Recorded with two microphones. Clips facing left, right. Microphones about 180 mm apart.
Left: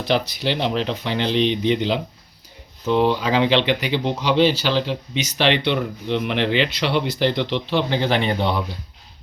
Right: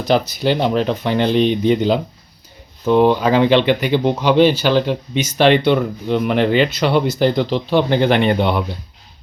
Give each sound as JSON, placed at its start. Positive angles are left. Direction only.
{"t": 0.0, "sound": "speech", "side_deg": -45}